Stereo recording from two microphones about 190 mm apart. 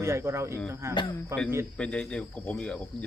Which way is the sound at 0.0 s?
15° right (ahead or behind).